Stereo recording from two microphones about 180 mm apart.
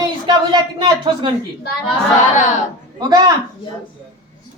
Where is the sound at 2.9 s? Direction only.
20° right (ahead or behind).